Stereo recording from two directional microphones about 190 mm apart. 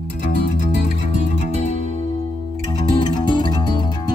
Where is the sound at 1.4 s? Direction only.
40° left (ahead or behind).